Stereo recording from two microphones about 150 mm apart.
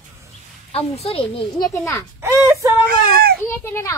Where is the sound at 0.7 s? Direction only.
45° left (ahead or behind).